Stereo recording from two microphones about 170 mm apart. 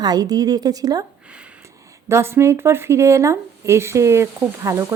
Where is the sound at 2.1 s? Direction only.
15° right (ahead or behind).